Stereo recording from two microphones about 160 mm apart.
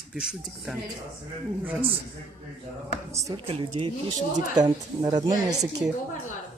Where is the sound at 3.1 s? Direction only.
20° right (ahead or behind).